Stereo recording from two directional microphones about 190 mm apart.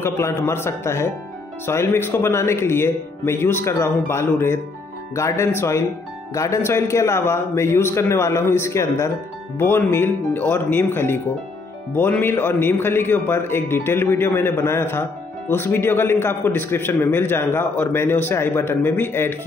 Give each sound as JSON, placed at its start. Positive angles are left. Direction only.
{"t": 0.0, "sound": "a man's voice", "side_deg": 10}